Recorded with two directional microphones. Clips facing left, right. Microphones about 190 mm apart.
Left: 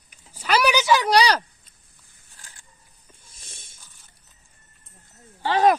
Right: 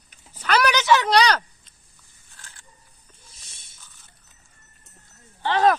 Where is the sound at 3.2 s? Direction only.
50° left (ahead or behind).